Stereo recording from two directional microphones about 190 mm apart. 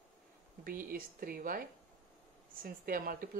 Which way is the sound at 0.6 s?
50° right (ahead or behind).